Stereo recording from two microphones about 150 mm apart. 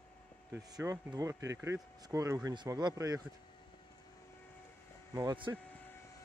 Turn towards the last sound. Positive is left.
turn(degrees=-30)  # may be behind; listen again after turning